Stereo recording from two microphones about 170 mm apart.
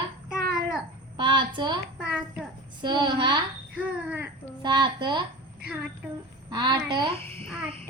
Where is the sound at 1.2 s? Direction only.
30° right (ahead or behind).